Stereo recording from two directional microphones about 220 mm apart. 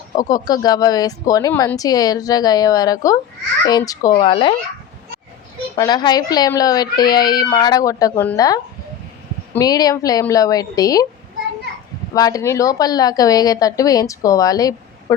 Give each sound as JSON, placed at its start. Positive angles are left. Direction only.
{"t": 0.2, "sound": "speech", "side_deg": 15}
{"t": 5.7, "sound": "speech", "side_deg": 20}
{"t": 12.1, "sound": "speech", "side_deg": 15}